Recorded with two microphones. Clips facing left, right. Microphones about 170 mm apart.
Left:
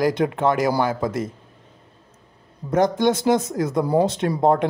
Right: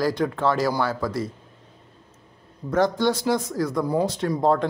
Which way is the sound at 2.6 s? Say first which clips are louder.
Left 2 dB; 20° left (ahead or behind).